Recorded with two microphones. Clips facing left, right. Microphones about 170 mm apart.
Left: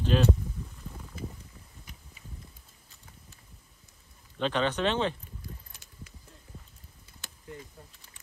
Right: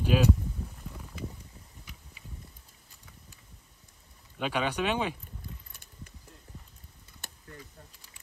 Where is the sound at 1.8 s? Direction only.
45° left (ahead or behind).